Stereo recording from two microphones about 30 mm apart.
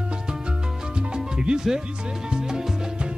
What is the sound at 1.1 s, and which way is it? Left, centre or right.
Music, right.